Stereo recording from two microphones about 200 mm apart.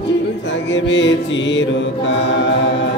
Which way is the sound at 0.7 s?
65° left (ahead or behind).